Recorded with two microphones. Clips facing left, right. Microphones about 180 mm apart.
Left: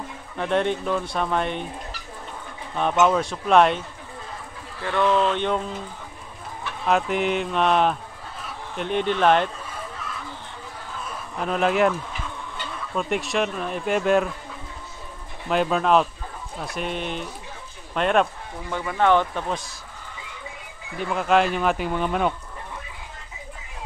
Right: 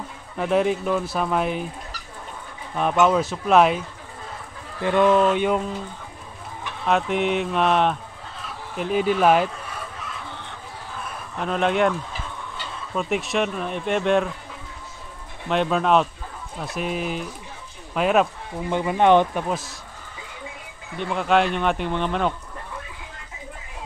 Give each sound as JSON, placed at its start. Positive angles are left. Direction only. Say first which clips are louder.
{"t": 0.4, "sound": "speech", "louder": "right 2 dB", "side_deg": -5}
{"t": 2.7, "sound": "speech", "louder": "right 1 dB", "side_deg": -5}
{"t": 4.8, "sound": "speech", "louder": "right 4 dB", "side_deg": -15}
{"t": 6.9, "sound": "speech", "louder": "right 1 dB", "side_deg": 0}
{"t": 11.3, "sound": "speech", "louder": "even", "side_deg": 5}
{"t": 12.9, "sound": "speech", "louder": "right 1 dB", "side_deg": 0}
{"t": 15.4, "sound": "speech", "louder": "even", "side_deg": 5}
{"t": 18.7, "sound": "speech", "louder": "right 3 dB", "side_deg": -20}
{"t": 21.0, "sound": "speech", "louder": "even", "side_deg": 0}